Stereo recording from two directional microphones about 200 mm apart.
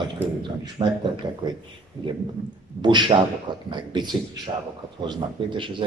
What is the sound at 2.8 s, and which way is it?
Speech, 20° right (ahead or behind).